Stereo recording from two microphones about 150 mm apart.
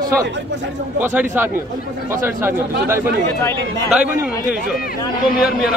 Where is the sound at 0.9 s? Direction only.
10° right (ahead or behind).